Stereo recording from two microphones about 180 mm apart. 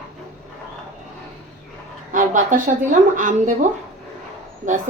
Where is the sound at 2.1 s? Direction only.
45° right (ahead or behind).